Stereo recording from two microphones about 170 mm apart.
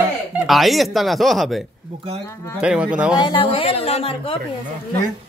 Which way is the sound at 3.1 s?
30° left (ahead or behind).